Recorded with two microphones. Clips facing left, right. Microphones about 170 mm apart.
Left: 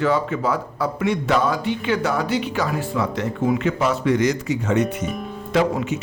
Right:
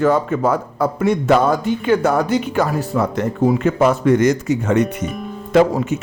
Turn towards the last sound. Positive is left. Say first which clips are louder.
# right 6 dB
turn(degrees=-45)  # may be behind; listen again after turning